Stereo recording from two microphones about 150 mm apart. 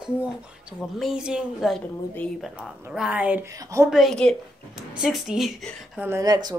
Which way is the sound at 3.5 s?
20° right (ahead or behind).